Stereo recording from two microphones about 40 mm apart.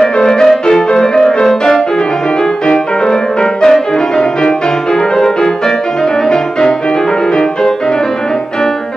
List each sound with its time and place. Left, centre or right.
0.0 s music: centre
3.6 s music: centre